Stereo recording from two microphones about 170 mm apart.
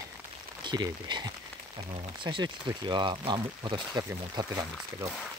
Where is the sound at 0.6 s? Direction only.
25° right (ahead or behind).